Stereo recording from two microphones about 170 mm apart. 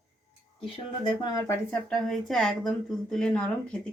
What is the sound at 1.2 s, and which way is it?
Speech, 20° left (ahead or behind).